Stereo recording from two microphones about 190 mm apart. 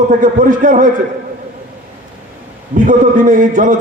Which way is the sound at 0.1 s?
45° right (ahead or behind).